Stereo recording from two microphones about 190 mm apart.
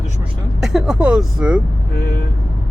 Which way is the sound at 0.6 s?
5° right (ahead or behind).